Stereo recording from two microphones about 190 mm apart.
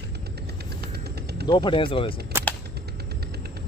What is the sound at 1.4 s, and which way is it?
Speech, 25° left (ahead or behind).